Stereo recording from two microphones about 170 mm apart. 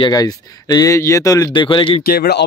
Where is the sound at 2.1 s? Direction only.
70° left (ahead or behind).